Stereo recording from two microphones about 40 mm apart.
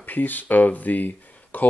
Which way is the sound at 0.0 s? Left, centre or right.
Left.